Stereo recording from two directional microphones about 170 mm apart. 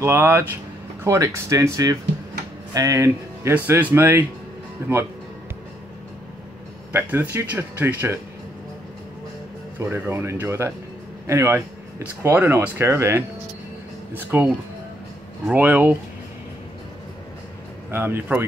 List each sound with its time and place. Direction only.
0.0 s speech: 15° right (ahead or behind)
6.9 s speech: 10° right (ahead or behind)
9.8 s speech: 15° right (ahead or behind)
17.9 s speech: 10° right (ahead or behind)